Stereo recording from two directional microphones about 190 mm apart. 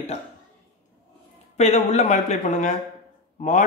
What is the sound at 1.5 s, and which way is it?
Speech, 35° left (ahead or behind).